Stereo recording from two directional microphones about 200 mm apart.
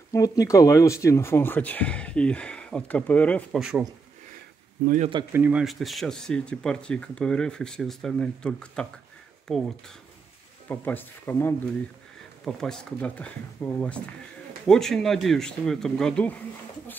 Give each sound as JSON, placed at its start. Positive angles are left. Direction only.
{"t": 0.1, "sound": "speech", "side_deg": 15}
{"t": 4.8, "sound": "speech", "side_deg": -40}
{"t": 5.3, "sound": "speech", "side_deg": -5}
{"t": 10.7, "sound": "speech", "side_deg": 10}